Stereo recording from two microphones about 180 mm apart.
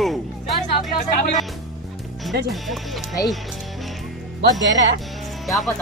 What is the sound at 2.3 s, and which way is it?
Speech, 65° right (ahead or behind).